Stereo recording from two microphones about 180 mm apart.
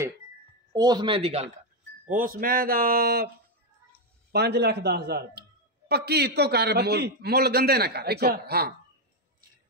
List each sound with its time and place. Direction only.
0.7 s speech: 25° right (ahead or behind)
2.0 s a man's voice: 50° right (ahead or behind)
4.3 s a man's voice: 65° right (ahead or behind)